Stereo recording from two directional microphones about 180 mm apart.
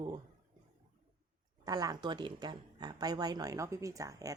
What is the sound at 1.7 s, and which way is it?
Speech, 20° right (ahead or behind).